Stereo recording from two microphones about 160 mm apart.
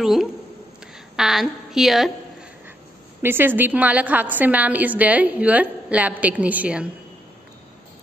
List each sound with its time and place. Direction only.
0.0 s a woman's voice: centre (ahead or behind)
3.2 s a woman's voice: 15° right (ahead or behind)